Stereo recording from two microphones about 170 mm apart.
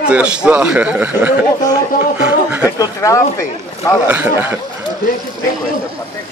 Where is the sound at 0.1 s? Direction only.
5° right (ahead or behind).